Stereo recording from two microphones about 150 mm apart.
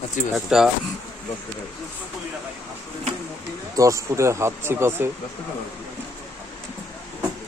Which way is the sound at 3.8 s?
20° right (ahead or behind).